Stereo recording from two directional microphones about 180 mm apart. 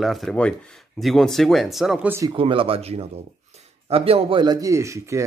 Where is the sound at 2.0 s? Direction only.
15° right (ahead or behind).